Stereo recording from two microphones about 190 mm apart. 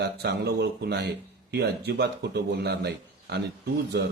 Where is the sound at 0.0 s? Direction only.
60° right (ahead or behind).